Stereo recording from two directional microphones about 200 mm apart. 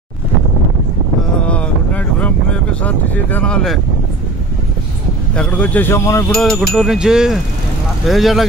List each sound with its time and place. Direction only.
1.4 s vehicle: 5° left (ahead or behind)
5.3 s speech: 5° left (ahead or behind)
6.3 s chime: centre (ahead or behind)